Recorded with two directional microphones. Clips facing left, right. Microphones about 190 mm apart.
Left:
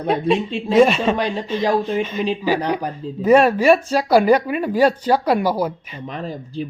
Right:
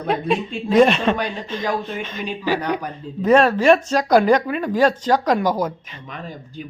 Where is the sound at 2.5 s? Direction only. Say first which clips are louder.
Even; 30° left (ahead or behind).